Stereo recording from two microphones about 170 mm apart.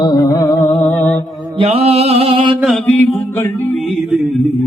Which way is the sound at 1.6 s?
35° right (ahead or behind).